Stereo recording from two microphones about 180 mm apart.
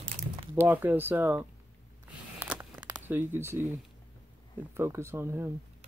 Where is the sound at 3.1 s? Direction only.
10° right (ahead or behind).